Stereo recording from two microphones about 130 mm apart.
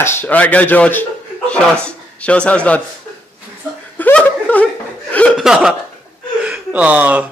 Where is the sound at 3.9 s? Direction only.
10° left (ahead or behind).